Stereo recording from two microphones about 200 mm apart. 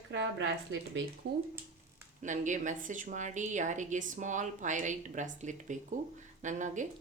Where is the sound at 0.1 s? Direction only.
65° right (ahead or behind).